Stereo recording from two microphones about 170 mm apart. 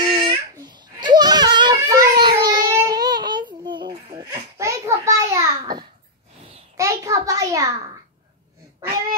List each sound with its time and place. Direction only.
0.0 s babbling: 30° right (ahead or behind)
1.8 s baby cry: 20° right (ahead or behind)
4.3 s a sound: 15° right (ahead or behind)